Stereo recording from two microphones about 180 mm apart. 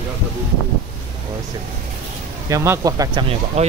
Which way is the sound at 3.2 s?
35° right (ahead or behind).